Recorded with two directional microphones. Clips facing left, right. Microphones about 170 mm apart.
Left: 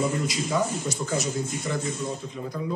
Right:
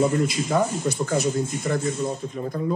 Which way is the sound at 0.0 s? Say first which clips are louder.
Right 5 dB; 55° right (ahead or behind).